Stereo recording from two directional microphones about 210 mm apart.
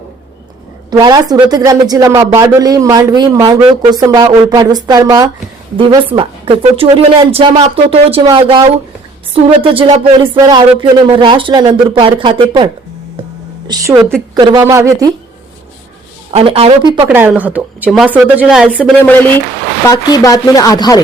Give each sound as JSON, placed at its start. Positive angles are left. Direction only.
{"t": 0.9, "sound": "speech", "side_deg": -20}
{"t": 13.7, "sound": "speech", "side_deg": -15}
{"t": 16.3, "sound": "speech", "side_deg": -25}
{"t": 17.1, "sound": "speech", "side_deg": -10}
{"t": 19.9, "sound": "speech", "side_deg": 15}